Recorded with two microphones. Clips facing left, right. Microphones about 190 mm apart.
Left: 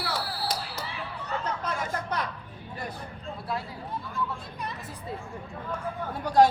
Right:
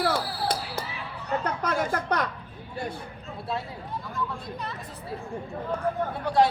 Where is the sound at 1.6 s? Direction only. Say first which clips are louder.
Right 5 dB; 70° right (ahead or behind).